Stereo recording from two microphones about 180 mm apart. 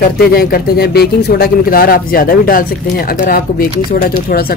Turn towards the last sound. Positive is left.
turn(degrees=55)  # may be behind; listen again after turning